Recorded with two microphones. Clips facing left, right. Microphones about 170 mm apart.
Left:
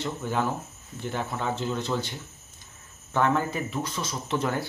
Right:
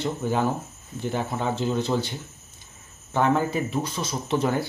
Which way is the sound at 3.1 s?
20° right (ahead or behind).